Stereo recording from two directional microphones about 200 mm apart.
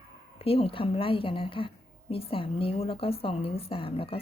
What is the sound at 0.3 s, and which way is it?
A woman's voice, 30° left (ahead or behind).